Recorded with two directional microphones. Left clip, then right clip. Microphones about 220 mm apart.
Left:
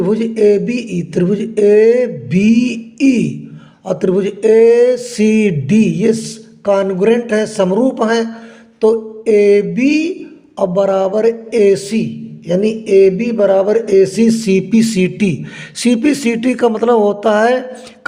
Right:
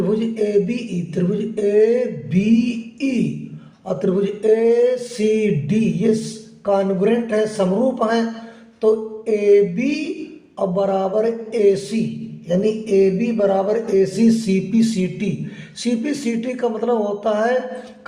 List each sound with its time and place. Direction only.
0.0 s speech: 45° left (ahead or behind)